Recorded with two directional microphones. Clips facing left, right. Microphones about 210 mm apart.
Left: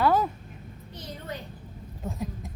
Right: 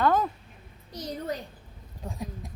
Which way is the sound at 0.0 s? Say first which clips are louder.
Left 1 dB; 5° left (ahead or behind).